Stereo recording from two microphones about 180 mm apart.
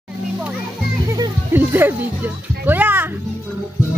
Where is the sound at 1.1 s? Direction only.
15° right (ahead or behind).